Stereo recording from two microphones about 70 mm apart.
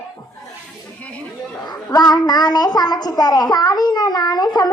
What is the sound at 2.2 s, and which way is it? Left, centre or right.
A child's voice, left.